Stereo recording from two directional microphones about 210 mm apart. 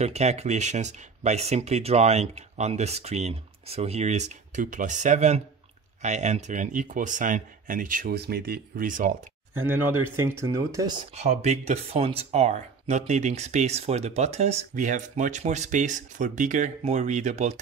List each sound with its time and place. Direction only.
0.0 s speech: 30° right (ahead or behind)
9.5 s speech: 10° right (ahead or behind)
11.1 s speech: 30° right (ahead or behind)